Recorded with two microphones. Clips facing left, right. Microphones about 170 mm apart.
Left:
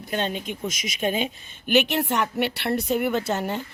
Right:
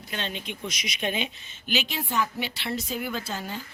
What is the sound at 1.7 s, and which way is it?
A woman's voice, 65° left (ahead or behind).